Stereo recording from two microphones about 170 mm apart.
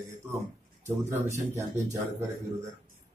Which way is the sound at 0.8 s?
15° right (ahead or behind).